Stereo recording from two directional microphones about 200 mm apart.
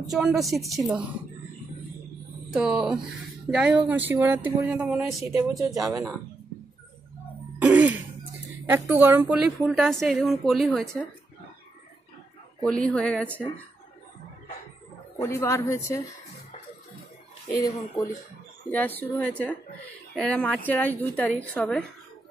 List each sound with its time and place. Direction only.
0.1 s a woman's voice: centre (ahead or behind)
2.5 s a woman's voice: 5° right (ahead or behind)
7.5 s throat clearing: 10° right (ahead or behind)
8.6 s a woman's voice: 10° right (ahead or behind)
12.6 s a woman's voice: 5° left (ahead or behind)
15.1 s a woman's voice: 15° left (ahead or behind)
17.5 s a woman's voice: 15° left (ahead or behind)